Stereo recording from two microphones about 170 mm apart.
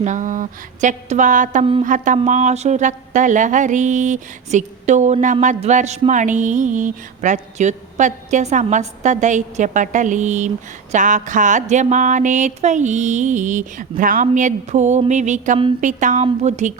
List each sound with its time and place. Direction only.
0.0 s mantra: 45° right (ahead or behind)